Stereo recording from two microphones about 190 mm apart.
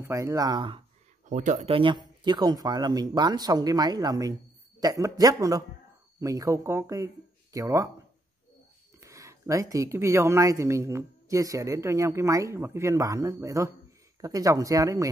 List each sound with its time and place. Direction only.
0.0 s speech: 15° right (ahead or behind)
1.3 s speech: 40° right (ahead or behind); by 7.9 s 15° right (ahead or behind)
9.0 s speech: 15° right (ahead or behind)